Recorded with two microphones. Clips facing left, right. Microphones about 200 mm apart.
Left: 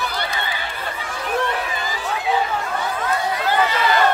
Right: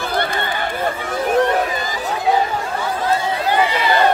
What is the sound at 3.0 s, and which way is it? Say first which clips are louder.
Chatter: right 4 dB; 30° right (ahead or behind).